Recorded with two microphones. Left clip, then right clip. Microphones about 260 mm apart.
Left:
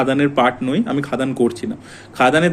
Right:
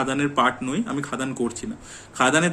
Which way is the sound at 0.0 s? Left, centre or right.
Centre.